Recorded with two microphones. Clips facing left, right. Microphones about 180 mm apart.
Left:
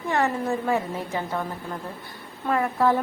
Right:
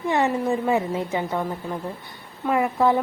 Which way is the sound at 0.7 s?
20° right (ahead or behind).